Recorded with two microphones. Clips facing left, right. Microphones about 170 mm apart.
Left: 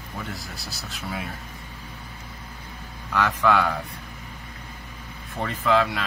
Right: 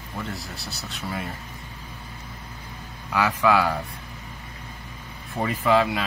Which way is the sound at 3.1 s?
10° right (ahead or behind).